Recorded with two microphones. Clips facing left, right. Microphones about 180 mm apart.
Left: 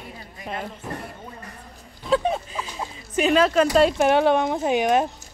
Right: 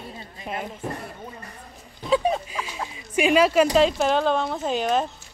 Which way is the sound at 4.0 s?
15° left (ahead or behind).